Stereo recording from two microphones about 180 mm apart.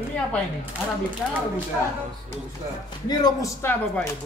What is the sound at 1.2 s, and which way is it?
Speech, centre (ahead or behind).